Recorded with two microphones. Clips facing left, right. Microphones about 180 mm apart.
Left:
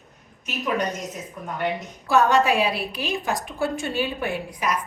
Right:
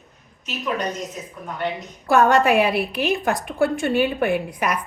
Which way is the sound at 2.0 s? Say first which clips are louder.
Right 3 dB; 55° right (ahead or behind).